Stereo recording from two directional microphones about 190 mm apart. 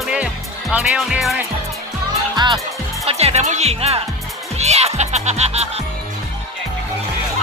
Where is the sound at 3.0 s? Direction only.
35° right (ahead or behind).